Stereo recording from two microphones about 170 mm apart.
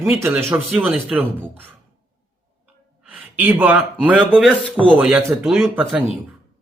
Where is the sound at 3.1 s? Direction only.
10° right (ahead or behind); by 4.8 s 5° left (ahead or behind).